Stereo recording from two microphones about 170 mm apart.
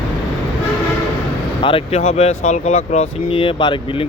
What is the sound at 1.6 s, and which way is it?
Speech, 35° left (ahead or behind).